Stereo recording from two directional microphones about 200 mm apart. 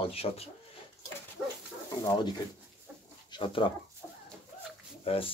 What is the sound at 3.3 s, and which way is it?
Speech, 25° left (ahead or behind).